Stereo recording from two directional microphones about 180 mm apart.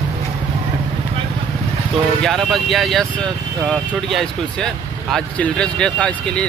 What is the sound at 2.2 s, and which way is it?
Speech, centre (ahead or behind).